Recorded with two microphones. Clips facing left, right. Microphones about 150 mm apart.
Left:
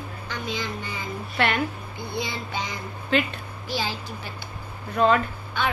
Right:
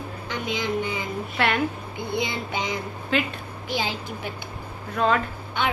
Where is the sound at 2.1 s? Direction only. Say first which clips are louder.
Right 3 dB; 20° right (ahead or behind).